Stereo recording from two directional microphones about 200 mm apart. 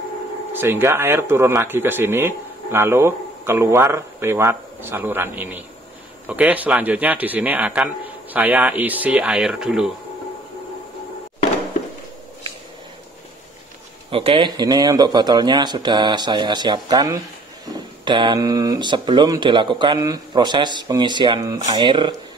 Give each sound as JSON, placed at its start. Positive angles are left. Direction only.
{"t": 0.5, "sound": "speech", "side_deg": -10}
{"t": 14.1, "sound": "speech", "side_deg": -25}